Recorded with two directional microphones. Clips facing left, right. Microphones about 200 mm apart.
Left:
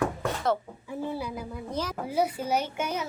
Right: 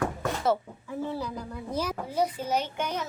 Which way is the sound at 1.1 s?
10° left (ahead or behind).